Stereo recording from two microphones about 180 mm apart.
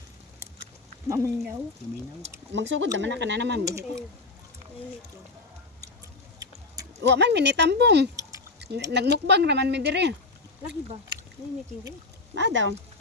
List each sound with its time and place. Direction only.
1.0 s speech: 20° right (ahead or behind)
2.5 s speech: 90° right; by 3.6 s 75° right (ahead or behind)
3.6 s speech: 15° right (ahead or behind)
7.0 s speech: 70° right (ahead or behind)
12.3 s speech: 90° right